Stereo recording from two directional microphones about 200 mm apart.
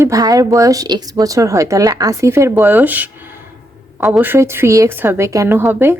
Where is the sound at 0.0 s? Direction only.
20° right (ahead or behind).